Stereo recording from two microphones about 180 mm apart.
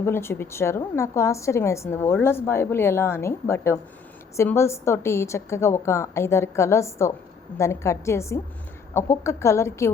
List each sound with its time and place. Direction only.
0.0 s a woman's voice: 15° left (ahead or behind)